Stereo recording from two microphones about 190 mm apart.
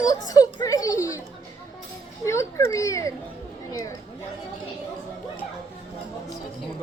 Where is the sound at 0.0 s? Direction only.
20° left (ahead or behind).